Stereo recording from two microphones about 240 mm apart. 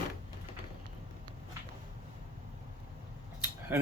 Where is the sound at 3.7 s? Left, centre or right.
Centre.